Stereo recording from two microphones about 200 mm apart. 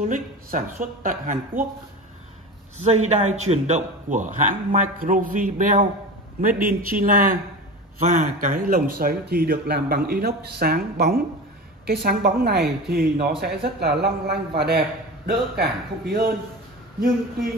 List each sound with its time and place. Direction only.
0.0 s a man's voice: 40° right (ahead or behind)
2.8 s a man's voice: 35° right (ahead or behind); by 16.3 s 50° right (ahead or behind)